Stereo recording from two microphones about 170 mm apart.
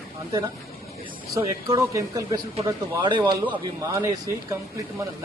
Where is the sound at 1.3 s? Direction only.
20° right (ahead or behind).